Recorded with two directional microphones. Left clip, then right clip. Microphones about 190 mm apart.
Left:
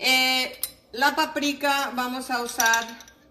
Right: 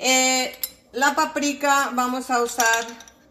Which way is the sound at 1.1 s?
40° right (ahead or behind).